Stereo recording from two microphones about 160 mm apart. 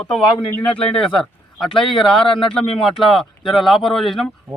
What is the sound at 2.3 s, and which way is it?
Speech, 30° left (ahead or behind).